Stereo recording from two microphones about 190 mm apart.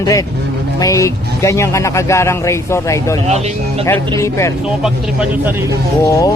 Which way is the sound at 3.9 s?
15° left (ahead or behind).